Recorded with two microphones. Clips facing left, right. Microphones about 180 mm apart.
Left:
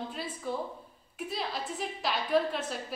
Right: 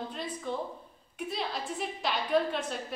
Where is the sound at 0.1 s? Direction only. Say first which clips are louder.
Even; 5° left (ahead or behind).